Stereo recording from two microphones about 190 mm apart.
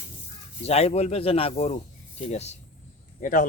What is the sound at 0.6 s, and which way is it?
Speech, 35° left (ahead or behind).